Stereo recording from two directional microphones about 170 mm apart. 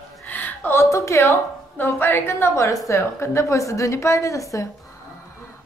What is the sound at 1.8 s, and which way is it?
A woman's voice, 15° left (ahead or behind).